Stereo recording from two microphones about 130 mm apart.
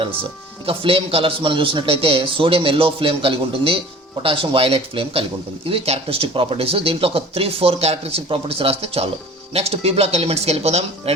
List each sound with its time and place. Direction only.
0.6 s speech: 45° right (ahead or behind)